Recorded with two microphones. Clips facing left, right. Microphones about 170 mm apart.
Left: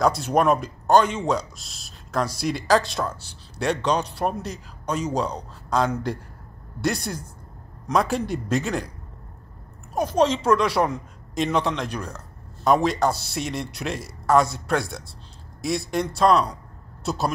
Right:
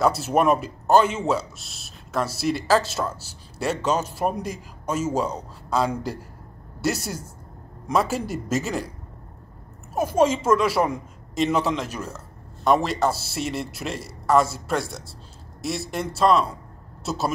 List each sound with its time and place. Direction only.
0.0 s speech: 5° right (ahead or behind)
9.9 s speech: 5° right (ahead or behind)